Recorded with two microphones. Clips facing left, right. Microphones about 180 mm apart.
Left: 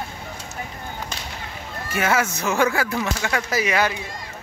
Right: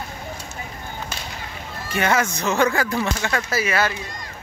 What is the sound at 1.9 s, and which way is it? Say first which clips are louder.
Speech: right 1 dB; 5° left (ahead or behind).